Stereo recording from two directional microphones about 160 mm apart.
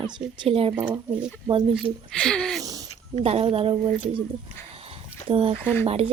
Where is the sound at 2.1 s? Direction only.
5° left (ahead or behind).